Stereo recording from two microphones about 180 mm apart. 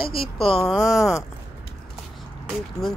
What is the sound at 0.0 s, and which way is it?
Speech, 30° left (ahead or behind).